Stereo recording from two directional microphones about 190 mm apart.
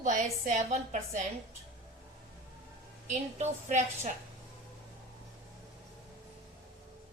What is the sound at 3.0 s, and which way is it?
A woman's voice, 35° right (ahead or behind).